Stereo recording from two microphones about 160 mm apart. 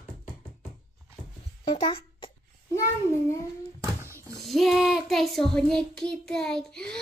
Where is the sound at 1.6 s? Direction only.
35° left (ahead or behind).